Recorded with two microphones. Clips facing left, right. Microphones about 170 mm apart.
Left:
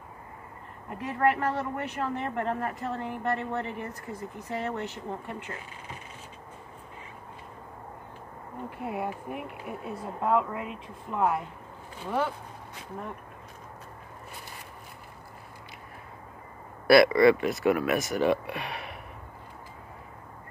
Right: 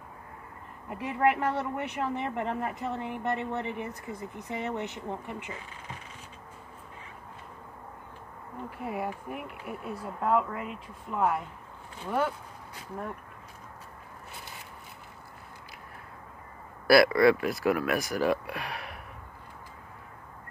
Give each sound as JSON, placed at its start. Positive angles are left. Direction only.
{"t": 0.8, "sound": "a woman's voice", "side_deg": -15}
{"t": 8.8, "sound": "speech", "side_deg": 0}
{"t": 16.8, "sound": "speech", "side_deg": 0}